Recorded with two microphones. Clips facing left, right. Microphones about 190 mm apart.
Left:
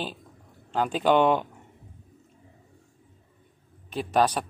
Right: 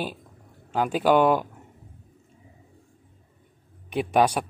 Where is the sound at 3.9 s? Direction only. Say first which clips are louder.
Right 2 dB; 15° right (ahead or behind).